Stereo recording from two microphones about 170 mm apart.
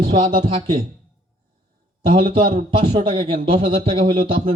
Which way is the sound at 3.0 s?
30° right (ahead or behind).